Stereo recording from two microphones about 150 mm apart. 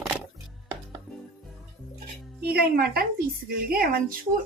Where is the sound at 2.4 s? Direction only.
90° right.